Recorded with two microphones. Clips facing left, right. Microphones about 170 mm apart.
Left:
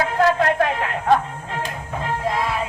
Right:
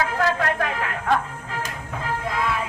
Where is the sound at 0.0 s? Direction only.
30° left (ahead or behind).